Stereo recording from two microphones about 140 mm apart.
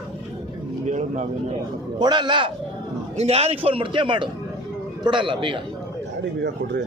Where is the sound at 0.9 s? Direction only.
55° right (ahead or behind).